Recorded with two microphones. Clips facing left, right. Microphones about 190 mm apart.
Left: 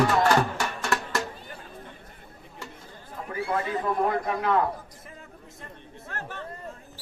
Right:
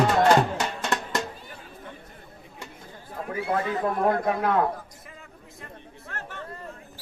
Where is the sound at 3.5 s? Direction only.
45° right (ahead or behind).